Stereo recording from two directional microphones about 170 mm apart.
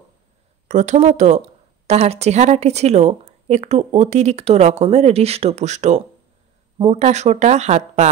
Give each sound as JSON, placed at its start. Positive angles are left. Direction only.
{"t": 0.7, "sound": "speech", "side_deg": -45}